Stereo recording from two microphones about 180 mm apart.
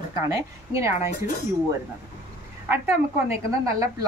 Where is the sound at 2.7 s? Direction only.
10° right (ahead or behind).